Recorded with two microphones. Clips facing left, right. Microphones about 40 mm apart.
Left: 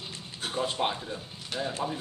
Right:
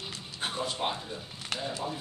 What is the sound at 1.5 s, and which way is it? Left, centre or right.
Speech, right.